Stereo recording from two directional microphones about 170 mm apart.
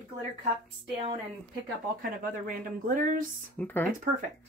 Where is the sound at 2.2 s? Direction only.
55° right (ahead or behind).